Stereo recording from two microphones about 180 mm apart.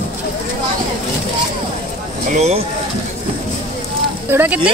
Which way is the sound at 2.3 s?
35° right (ahead or behind).